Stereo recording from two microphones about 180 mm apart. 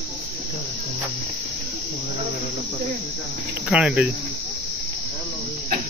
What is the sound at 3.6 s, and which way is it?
Speech, 5° right (ahead or behind).